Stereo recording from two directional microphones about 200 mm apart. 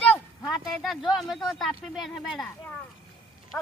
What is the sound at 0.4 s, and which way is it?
Speech, centre (ahead or behind).